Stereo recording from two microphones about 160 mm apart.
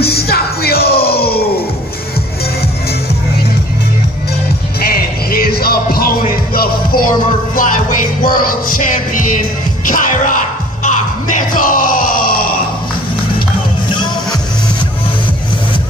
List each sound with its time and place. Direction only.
0.0 s music: 80° left
4.7 s music: 70° left (ahead or behind)
13.8 s music: 30° left (ahead or behind)